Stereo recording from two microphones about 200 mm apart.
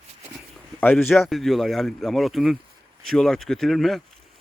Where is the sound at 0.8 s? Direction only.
10° left (ahead or behind).